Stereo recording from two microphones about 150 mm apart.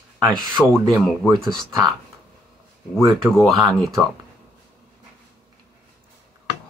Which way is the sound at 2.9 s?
5° left (ahead or behind).